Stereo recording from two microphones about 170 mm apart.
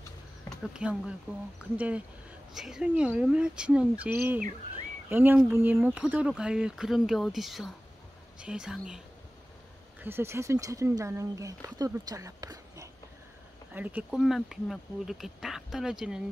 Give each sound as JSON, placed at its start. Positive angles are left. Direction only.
{"t": 0.7, "sound": "speech", "side_deg": -5}
{"t": 5.1, "sound": "speech", "side_deg": -10}
{"t": 10.0, "sound": "speech", "side_deg": -15}